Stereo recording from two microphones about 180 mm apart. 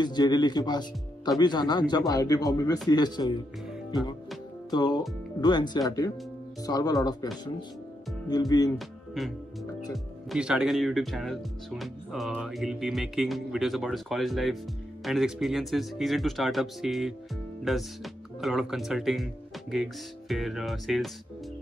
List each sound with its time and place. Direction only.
0.0 s speech: 25° left (ahead or behind)
4.6 s speech: 25° left (ahead or behind)
8.3 s speech: 20° left (ahead or behind)
8.7 s speech: centre (ahead or behind)
10.3 s speech: 5° right (ahead or behind)